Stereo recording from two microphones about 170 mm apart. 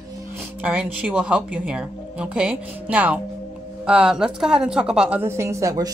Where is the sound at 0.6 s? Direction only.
10° right (ahead or behind).